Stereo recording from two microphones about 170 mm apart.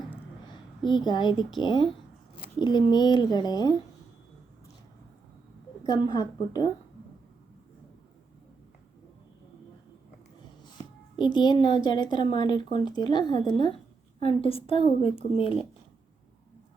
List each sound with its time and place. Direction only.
0.9 s a woman's voice: 25° left (ahead or behind)
5.8 s a woman's voice: 25° left (ahead or behind)
11.2 s a woman's voice: 25° left (ahead or behind)